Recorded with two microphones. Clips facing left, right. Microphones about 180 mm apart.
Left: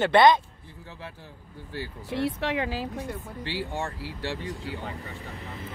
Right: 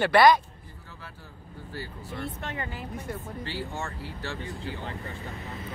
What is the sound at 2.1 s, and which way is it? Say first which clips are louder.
Speech: left 10 dB; 85° left.